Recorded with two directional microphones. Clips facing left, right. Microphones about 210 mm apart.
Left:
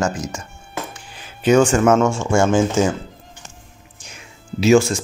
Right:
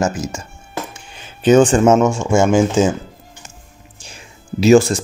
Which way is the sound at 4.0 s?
30° right (ahead or behind).